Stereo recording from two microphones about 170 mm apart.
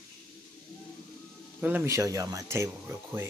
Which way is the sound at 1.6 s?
10° right (ahead or behind).